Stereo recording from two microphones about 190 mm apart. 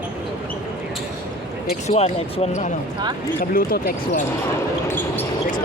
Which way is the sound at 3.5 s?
50° left (ahead or behind).